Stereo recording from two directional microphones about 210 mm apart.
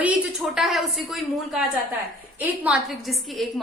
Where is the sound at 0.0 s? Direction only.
5° right (ahead or behind).